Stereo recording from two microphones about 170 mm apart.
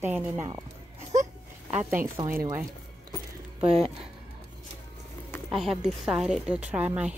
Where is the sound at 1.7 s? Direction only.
10° right (ahead or behind).